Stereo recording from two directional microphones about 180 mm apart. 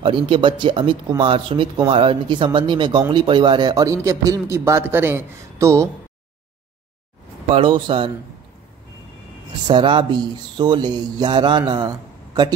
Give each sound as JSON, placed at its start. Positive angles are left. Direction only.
{"t": 0.0, "sound": "speech", "side_deg": -25}
{"t": 7.5, "sound": "speech", "side_deg": -30}
{"t": 9.7, "sound": "speech", "side_deg": -25}